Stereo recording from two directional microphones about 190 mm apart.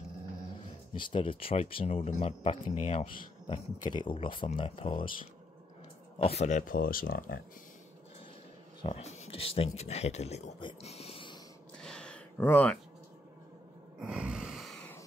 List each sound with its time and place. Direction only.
0.9 s speech: 25° left (ahead or behind)
6.1 s speech: 30° left (ahead or behind); by 7.4 s 50° left (ahead or behind)
8.8 s speech: 35° left (ahead or behind)
11.8 s a sound: 5° left (ahead or behind)
14.0 s snort: 5° right (ahead or behind)